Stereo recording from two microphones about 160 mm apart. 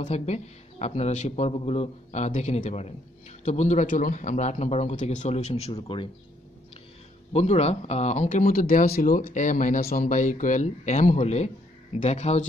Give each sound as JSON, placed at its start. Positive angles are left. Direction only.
{"t": 0.0, "sound": "speech", "side_deg": 45}
{"t": 7.3, "sound": "speech", "side_deg": 40}